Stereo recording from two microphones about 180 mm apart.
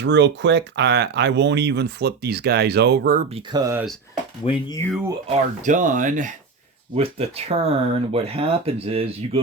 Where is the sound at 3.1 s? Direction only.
35° right (ahead or behind).